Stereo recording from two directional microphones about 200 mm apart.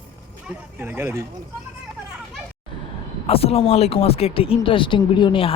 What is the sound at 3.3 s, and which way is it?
Speech, 30° left (ahead or behind).